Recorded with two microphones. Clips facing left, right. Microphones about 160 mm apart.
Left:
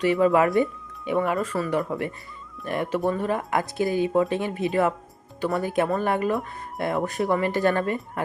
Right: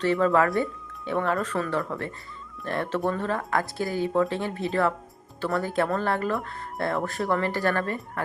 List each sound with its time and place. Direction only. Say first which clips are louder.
0.0 s speech: left 2 dB; 10° left (ahead or behind)